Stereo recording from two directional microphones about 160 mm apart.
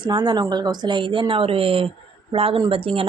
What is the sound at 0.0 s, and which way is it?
Speech, 30° right (ahead or behind).